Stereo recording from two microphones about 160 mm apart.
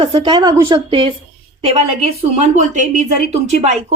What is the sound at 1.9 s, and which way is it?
Speech, 45° right (ahead or behind).